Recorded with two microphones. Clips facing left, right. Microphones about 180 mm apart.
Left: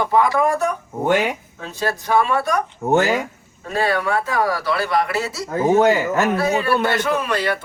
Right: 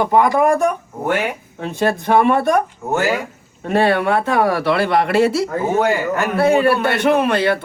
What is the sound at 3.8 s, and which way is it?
Speech, 60° right (ahead or behind).